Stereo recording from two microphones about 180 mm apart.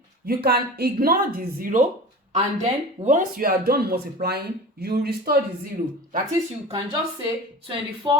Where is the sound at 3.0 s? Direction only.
45° right (ahead or behind).